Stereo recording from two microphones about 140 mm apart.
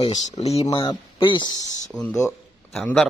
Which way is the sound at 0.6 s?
35° left (ahead or behind).